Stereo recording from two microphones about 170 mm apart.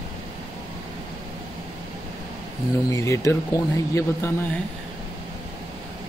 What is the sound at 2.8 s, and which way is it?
Speech, 15° left (ahead or behind).